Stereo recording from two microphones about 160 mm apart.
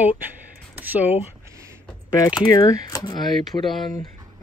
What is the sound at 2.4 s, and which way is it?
Speech, 25° left (ahead or behind).